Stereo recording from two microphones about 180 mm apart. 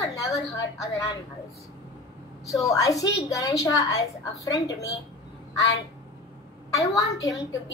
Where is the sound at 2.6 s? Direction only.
20° left (ahead or behind).